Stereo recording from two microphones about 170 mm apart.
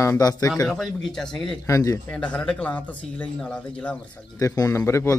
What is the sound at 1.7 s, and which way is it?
Speech, 20° left (ahead or behind).